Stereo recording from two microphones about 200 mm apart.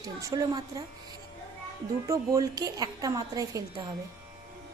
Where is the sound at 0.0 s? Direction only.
20° right (ahead or behind).